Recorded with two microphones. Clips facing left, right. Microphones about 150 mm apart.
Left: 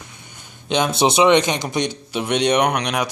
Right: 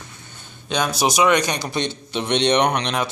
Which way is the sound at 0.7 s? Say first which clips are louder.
Left 3 dB; 20° left (ahead or behind).